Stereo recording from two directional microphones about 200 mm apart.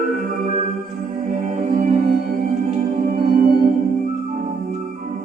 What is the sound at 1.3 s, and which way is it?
Music, 40° right (ahead or behind).